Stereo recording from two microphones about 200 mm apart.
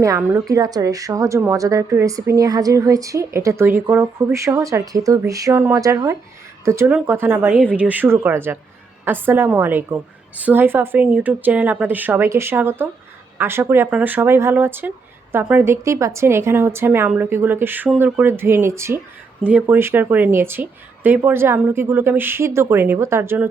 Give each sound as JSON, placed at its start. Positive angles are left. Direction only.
{"t": 0.0, "sound": "a woman's voice", "side_deg": -15}